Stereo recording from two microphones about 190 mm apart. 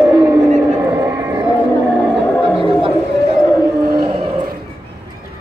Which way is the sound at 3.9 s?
25° right (ahead or behind).